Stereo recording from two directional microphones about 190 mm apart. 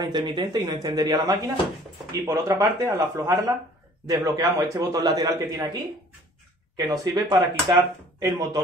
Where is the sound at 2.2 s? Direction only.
15° right (ahead or behind).